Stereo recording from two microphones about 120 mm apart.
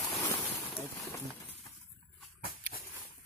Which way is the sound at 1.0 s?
20° left (ahead or behind).